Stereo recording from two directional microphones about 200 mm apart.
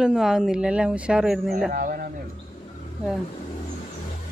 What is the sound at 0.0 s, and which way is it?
Speech, 5° right (ahead or behind).